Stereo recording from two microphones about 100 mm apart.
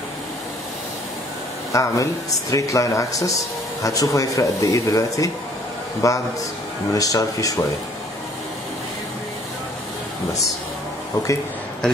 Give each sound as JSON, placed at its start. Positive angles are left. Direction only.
{"t": 1.7, "sound": "speech", "side_deg": 35}